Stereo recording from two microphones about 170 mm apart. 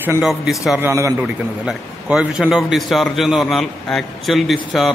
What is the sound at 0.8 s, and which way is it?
Speech, 15° right (ahead or behind).